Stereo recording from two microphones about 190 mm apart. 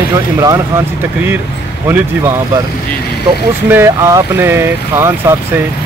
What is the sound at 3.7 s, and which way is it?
Speech, 15° right (ahead or behind).